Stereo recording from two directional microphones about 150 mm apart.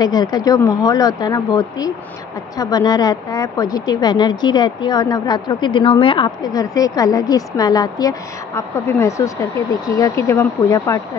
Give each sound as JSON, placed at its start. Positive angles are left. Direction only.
{"t": 0.0, "sound": "a woman's voice", "side_deg": 25}